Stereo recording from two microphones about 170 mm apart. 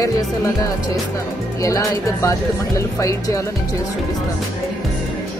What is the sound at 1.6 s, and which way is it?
Speech, 20° left (ahead or behind).